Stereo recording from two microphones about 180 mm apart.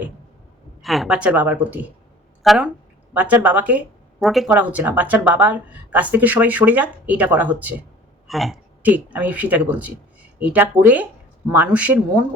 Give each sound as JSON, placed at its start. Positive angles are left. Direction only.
{"t": 0.8, "sound": "a woman's voice", "side_deg": 0}